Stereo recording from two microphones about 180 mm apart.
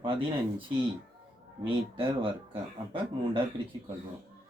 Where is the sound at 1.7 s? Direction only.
30° right (ahead or behind).